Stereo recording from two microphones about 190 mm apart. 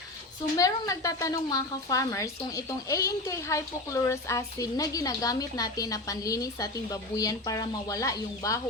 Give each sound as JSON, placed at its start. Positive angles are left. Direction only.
{"t": 0.5, "sound": "a woman's voice", "side_deg": 20}